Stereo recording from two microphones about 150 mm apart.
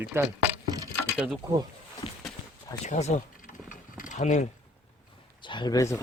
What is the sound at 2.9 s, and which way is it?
Speech, 50° left (ahead or behind).